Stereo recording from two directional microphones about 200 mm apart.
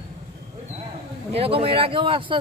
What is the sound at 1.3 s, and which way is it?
Speech, 30° right (ahead or behind).